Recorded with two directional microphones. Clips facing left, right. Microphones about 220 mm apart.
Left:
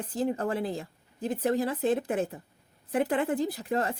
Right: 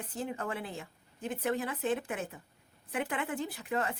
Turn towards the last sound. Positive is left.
turn(degrees=35)  # may be behind; listen again after turning